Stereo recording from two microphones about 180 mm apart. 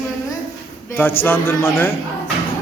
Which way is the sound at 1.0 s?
10° left (ahead or behind).